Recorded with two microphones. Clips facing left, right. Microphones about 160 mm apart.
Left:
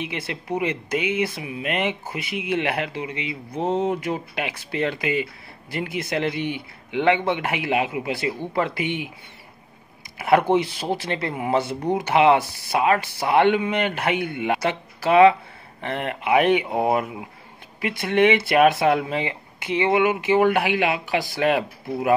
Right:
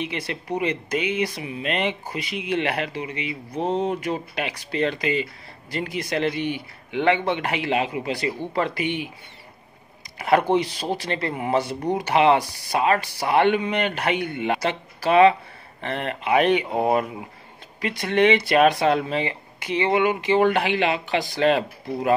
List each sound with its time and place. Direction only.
0.3 s speech: 15° left (ahead or behind)
10.1 s speech: 15° left (ahead or behind)
12.4 s speech: 15° right (ahead or behind)
12.7 s speech: 15° left (ahead or behind)